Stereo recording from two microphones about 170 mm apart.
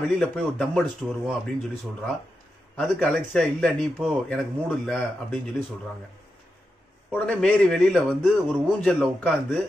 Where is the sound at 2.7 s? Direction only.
5° left (ahead or behind).